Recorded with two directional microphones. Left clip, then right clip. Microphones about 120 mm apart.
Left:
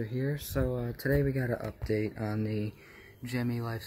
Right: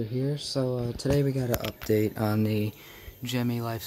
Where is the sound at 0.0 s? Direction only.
20° right (ahead or behind).